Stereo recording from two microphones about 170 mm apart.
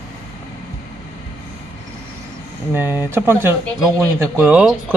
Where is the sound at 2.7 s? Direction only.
15° right (ahead or behind).